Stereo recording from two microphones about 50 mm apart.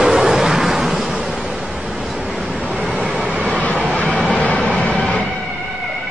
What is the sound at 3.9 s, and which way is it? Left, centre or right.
Train, left.